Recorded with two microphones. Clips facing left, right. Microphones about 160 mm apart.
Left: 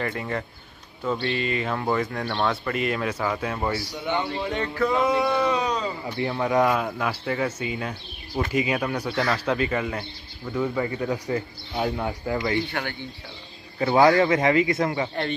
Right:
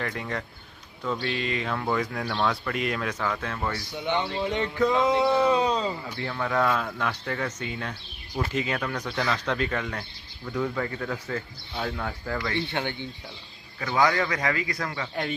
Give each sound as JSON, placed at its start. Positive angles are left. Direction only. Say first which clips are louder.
{"t": 0.0, "sound": "speech", "louder": "left 3 dB", "side_deg": 5}
{"t": 4.0, "sound": "speech", "louder": "right 1 dB", "side_deg": -20}
{"t": 6.0, "sound": "speech", "louder": "left 5 dB", "side_deg": 20}
{"t": 12.7, "sound": "speech", "louder": "right 1 dB", "side_deg": -20}
{"t": 13.7, "sound": "speech", "louder": "left 6 dB", "side_deg": 30}